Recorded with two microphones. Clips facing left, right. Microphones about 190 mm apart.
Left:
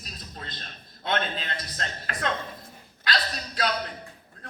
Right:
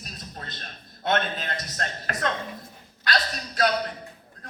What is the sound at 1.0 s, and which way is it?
A man's voice, 45° right (ahead or behind).